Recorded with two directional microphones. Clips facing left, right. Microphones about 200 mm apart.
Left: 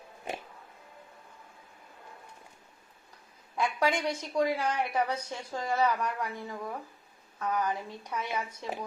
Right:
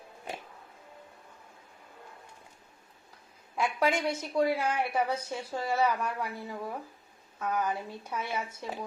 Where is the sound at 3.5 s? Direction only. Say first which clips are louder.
Right 1 dB; 5° right (ahead or behind).